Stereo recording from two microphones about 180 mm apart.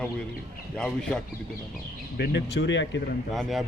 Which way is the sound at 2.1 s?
70° left (ahead or behind).